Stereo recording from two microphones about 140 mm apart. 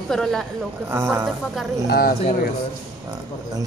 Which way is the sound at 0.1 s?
5° left (ahead or behind).